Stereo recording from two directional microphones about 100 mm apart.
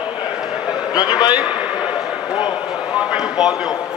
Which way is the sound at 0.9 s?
40° left (ahead or behind).